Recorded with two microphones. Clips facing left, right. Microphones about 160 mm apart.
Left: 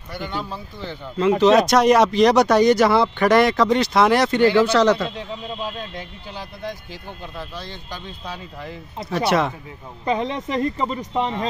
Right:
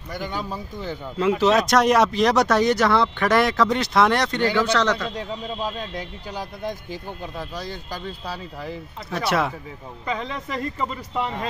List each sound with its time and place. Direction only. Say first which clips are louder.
0.2 s speech: left 1 dB; 10° right (ahead or behind); by 5.1 s 10° left (ahead or behind)
6.6 s speech: right 2 dB; 15° right (ahead or behind)
10.0 s speech: left 6 dB; 30° left (ahead or behind)